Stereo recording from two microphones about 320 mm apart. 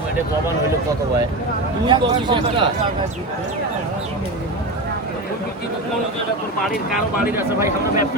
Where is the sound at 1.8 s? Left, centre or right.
Centre.